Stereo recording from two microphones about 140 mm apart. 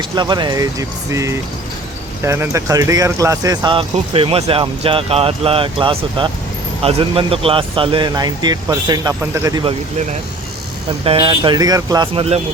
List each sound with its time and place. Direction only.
0.2 s speech: 30° right (ahead or behind)
11.0 s speech: 40° right (ahead or behind)